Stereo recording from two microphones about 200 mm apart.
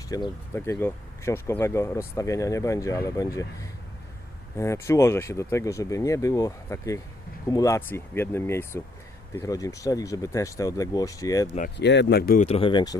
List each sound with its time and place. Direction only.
0.1 s speech: 15° left (ahead or behind)
11.8 s speech: 60° left (ahead or behind)
12.4 s speech: 30° left (ahead or behind)